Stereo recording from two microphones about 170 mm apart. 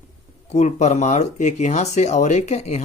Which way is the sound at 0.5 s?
45° left (ahead or behind).